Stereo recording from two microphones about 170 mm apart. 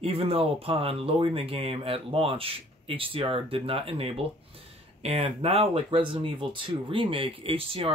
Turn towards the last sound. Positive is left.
turn(degrees=-35)  # may be behind; listen again after turning